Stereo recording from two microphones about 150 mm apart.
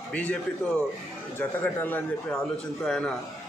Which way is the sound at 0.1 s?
10° left (ahead or behind).